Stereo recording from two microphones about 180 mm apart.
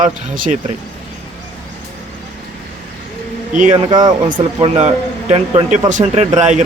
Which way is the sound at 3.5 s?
45° right (ahead or behind).